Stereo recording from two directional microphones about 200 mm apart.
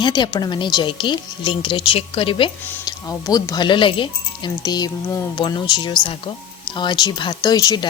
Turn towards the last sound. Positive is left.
turn(degrees=20)  # may be behind; listen again after turning